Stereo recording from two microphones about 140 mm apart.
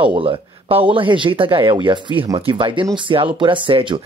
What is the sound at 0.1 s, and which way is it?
Speech, 40° right (ahead or behind).